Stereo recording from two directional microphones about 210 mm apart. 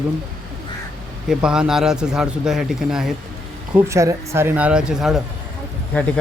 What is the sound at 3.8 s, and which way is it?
A man's voice, 15° right (ahead or behind).